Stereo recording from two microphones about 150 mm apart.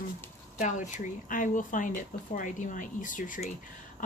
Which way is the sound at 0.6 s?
55° left (ahead or behind).